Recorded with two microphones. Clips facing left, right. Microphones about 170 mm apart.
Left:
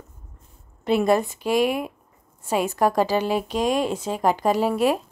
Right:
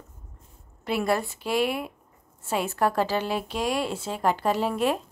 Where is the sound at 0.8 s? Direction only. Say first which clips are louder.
Left 6 dB; 20° left (ahead or behind).